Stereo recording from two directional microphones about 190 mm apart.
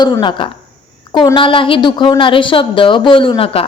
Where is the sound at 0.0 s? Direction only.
20° left (ahead or behind).